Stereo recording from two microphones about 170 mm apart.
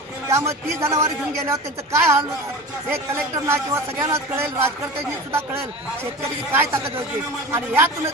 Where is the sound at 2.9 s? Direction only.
15° right (ahead or behind).